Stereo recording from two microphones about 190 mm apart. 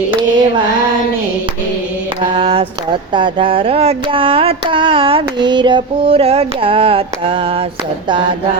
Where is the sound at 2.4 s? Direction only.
30° right (ahead or behind).